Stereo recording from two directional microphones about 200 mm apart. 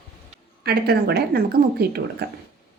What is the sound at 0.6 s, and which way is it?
Speech, 55° right (ahead or behind).